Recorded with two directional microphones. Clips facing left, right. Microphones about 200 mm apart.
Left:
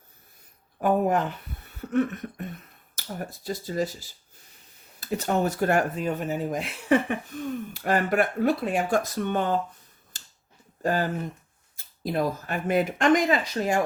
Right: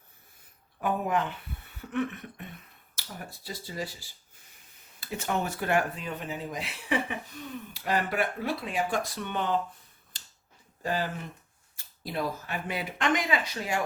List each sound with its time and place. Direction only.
0.8 s speech: 45° left (ahead or behind)
4.9 s speech: 40° left (ahead or behind)
10.8 s speech: 45° left (ahead or behind)